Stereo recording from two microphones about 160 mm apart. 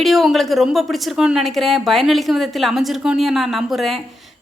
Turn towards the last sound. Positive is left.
turn(degrees=0)  # may be behind; listen again after turning